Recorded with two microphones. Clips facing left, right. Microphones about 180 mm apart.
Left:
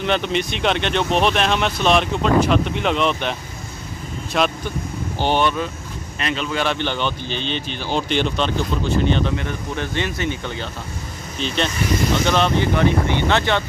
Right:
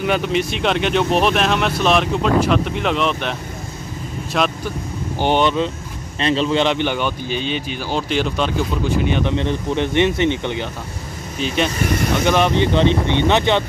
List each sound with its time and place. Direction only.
0.0 s speech: 5° right (ahead or behind)
5.2 s speech: 20° right (ahead or behind)
6.1 s speech: 30° right (ahead or behind)
6.6 s speech: 15° right (ahead or behind)
9.3 s speech: 25° right (ahead or behind)
11.3 s speech: 10° right (ahead or behind)